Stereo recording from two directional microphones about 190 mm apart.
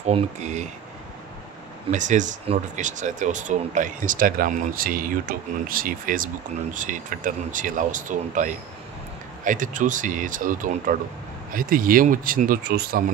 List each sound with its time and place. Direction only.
0.0 s speech: 35° right (ahead or behind)
1.9 s speech: 40° right (ahead or behind)